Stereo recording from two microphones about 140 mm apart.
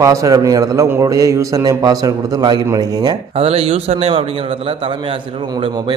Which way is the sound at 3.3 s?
45° right (ahead or behind).